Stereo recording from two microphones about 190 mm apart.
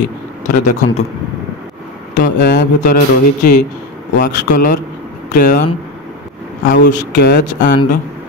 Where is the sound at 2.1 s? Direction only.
60° left (ahead or behind).